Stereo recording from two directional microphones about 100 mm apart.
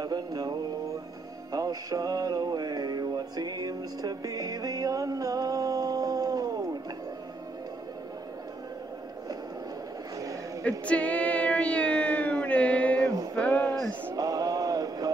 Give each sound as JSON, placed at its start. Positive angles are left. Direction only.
{"t": 0.0, "sound": "mantra", "side_deg": -40}
{"t": 1.5, "sound": "music", "side_deg": -35}
{"t": 10.6, "sound": "female singing", "side_deg": 15}
{"t": 13.0, "sound": "music", "side_deg": -35}
{"t": 13.4, "sound": "a sound", "side_deg": 15}
{"t": 14.1, "sound": "a sound", "side_deg": -40}